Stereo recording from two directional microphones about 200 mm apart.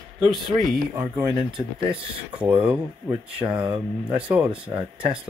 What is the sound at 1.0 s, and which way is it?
Speech, 10° right (ahead or behind).